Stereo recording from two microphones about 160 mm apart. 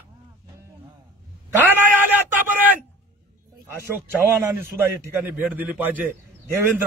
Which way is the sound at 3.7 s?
15° right (ahead or behind).